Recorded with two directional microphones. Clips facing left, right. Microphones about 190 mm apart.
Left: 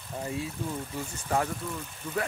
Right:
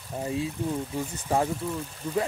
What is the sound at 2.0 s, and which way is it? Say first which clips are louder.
Speech: right 5 dB; 30° right (ahead or behind).